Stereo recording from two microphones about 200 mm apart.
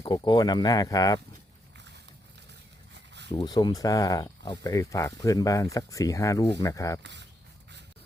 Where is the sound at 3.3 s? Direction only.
20° left (ahead or behind).